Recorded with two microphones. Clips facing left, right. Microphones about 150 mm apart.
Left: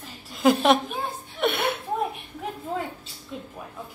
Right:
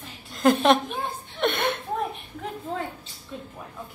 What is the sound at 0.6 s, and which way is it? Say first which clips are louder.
A woman's voice: even; 5° left (ahead or behind).